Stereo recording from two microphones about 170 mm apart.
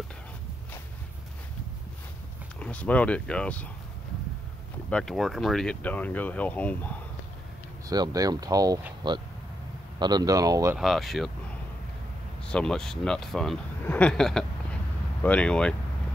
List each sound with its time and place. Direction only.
2.6 s speech: 10° left (ahead or behind)
4.8 s speech: 5° left (ahead or behind)
7.9 s speech: 20° right (ahead or behind)
10.8 s speech: centre (ahead or behind)
12.4 s speech: 5° left (ahead or behind)